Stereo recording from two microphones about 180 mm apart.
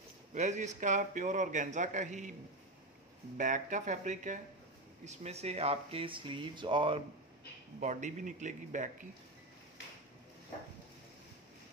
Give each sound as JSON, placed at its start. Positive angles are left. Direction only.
{"t": 0.3, "sound": "a man's voice", "side_deg": -40}
{"t": 3.3, "sound": "a man's voice", "side_deg": -45}
{"t": 7.8, "sound": "a man's voice", "side_deg": -45}